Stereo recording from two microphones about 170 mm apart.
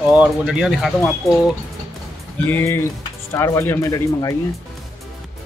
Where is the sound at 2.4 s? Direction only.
10° left (ahead or behind).